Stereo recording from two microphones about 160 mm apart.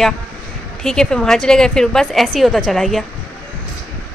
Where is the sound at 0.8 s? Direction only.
5° left (ahead or behind).